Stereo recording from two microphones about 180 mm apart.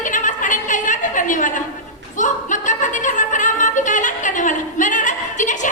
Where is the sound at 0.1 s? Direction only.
45° left (ahead or behind).